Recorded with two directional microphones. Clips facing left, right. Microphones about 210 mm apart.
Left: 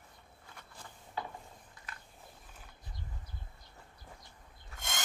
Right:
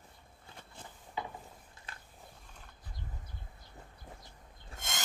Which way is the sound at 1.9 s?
30° right (ahead or behind).